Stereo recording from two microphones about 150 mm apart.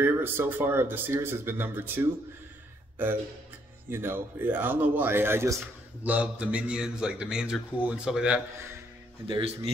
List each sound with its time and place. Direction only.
0.0 s speech: 15° right (ahead or behind)
3.9 s a man's voice: 15° right (ahead or behind)
9.3 s a man's voice: 40° right (ahead or behind)